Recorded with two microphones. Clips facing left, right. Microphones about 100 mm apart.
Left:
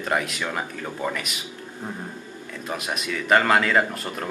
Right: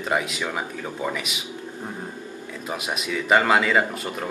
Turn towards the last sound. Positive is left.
turn(degrees=-5)  # may be behind; listen again after turning